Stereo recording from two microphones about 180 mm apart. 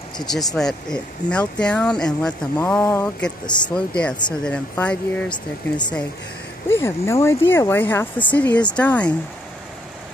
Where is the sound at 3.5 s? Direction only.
25° left (ahead or behind).